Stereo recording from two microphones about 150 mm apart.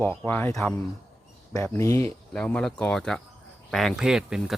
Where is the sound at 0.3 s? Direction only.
10° left (ahead or behind).